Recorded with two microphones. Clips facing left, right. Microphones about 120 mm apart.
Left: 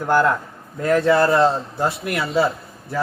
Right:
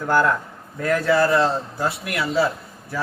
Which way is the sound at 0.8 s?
25° left (ahead or behind).